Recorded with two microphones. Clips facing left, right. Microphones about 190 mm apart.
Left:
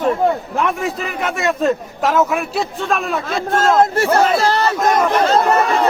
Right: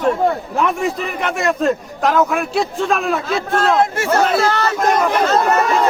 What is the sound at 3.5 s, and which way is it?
Speech, 40° left (ahead or behind).